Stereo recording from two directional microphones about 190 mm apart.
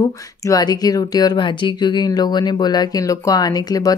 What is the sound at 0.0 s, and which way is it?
Speech, 20° left (ahead or behind).